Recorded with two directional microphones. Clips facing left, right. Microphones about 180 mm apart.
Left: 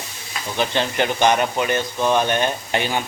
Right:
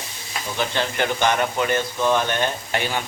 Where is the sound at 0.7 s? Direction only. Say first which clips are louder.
Left 2 dB; 20° left (ahead or behind).